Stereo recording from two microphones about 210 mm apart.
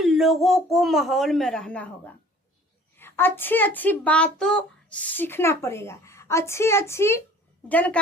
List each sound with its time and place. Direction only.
0.0 s speech: centre (ahead or behind)